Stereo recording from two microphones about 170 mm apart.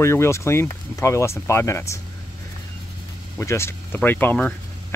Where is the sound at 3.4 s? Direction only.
15° left (ahead or behind).